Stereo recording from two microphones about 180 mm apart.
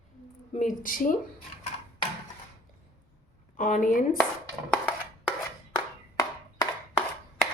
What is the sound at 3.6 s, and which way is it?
Speech, 50° left (ahead or behind).